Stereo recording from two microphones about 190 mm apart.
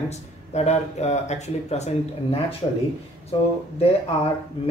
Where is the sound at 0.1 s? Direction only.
35° left (ahead or behind).